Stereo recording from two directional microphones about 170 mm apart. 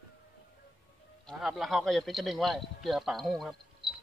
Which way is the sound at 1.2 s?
5° right (ahead or behind).